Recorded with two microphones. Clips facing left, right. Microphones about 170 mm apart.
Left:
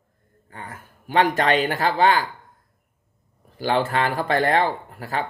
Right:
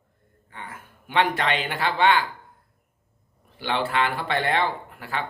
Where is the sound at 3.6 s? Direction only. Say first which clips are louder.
Left 3 dB; 45° left (ahead or behind).